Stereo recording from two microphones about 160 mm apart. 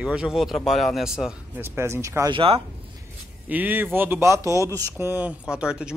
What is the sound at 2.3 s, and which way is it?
Speech, 35° right (ahead or behind).